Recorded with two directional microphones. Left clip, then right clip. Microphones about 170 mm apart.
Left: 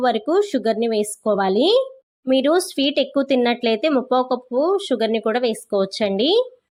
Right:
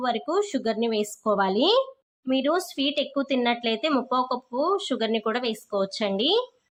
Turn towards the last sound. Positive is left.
turn(degrees=25)  # may be behind; listen again after turning